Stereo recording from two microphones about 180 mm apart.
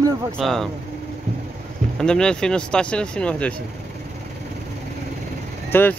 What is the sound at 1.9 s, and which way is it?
Speech, 5° left (ahead or behind).